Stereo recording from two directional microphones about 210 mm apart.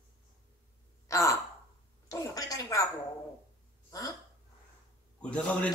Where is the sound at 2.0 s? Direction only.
15° left (ahead or behind).